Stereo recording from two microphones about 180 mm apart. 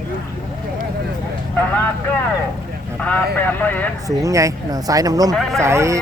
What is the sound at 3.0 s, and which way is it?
Speech, 10° left (ahead or behind).